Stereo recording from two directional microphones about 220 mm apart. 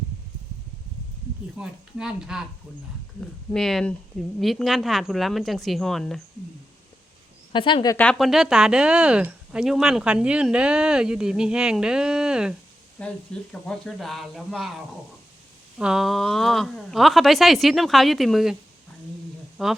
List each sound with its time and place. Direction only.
1.5 s speech: 5° right (ahead or behind)
7.5 s speech: 20° left (ahead or behind)
7.9 s speech: 5° left (ahead or behind)
13.0 s speech: 5° left (ahead or behind)
19.6 s speech: centre (ahead or behind)